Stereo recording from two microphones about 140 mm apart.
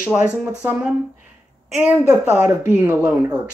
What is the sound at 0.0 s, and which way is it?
Speech, 5° right (ahead or behind).